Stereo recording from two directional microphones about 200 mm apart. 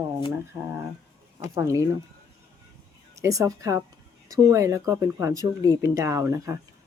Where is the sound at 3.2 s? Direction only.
15° right (ahead or behind).